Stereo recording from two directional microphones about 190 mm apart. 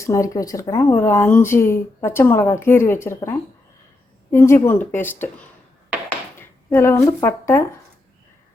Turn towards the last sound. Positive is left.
turn(degrees=15)  # may be behind; listen again after turning